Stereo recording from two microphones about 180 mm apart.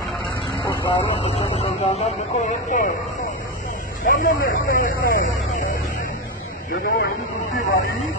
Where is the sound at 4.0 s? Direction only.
55° left (ahead or behind).